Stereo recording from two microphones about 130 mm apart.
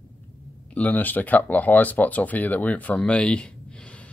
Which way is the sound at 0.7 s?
10° left (ahead or behind).